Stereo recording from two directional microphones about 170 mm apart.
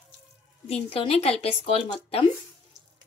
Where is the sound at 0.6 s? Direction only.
35° left (ahead or behind).